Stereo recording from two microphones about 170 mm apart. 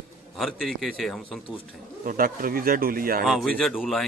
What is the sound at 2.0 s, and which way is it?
A man's voice, 55° right (ahead or behind).